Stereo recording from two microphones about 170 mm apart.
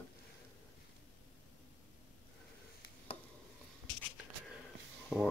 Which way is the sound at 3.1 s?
30° left (ahead or behind).